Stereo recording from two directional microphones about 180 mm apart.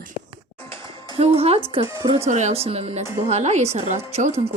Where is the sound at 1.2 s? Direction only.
35° right (ahead or behind).